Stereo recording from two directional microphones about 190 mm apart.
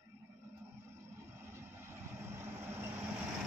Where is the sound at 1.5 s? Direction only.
15° right (ahead or behind).